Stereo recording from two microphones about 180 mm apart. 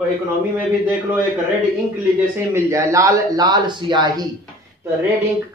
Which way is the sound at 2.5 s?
15° right (ahead or behind).